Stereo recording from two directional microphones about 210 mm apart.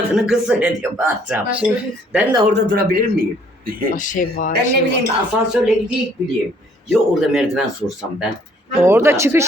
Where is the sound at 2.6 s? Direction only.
50° right (ahead or behind).